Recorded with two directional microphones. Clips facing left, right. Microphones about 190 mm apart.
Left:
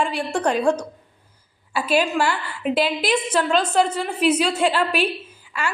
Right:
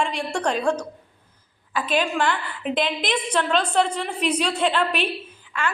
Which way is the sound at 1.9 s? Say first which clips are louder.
Left 3 dB; 10° left (ahead or behind).